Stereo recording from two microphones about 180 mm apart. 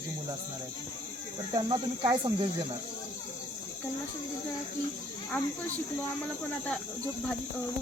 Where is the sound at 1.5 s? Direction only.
25° right (ahead or behind).